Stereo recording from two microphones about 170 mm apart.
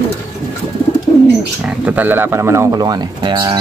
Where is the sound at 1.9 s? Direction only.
10° right (ahead or behind); by 3.5 s 25° right (ahead or behind).